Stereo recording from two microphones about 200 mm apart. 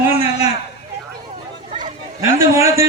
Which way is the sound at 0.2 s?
30° left (ahead or behind).